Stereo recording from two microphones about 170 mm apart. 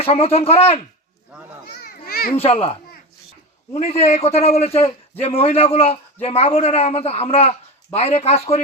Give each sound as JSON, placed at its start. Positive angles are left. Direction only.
{"t": 0.0, "sound": "a man's voice", "side_deg": 35}
{"t": 1.7, "sound": "children playing", "side_deg": 65}
{"t": 2.4, "sound": "a man's voice", "side_deg": 35}
{"t": 3.8, "sound": "a man's voice", "side_deg": 40}